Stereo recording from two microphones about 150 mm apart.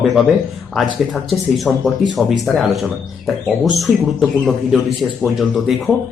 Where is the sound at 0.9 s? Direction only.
Centre (ahead or behind).